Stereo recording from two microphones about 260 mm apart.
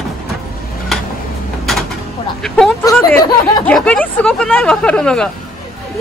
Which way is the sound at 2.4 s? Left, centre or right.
Centre.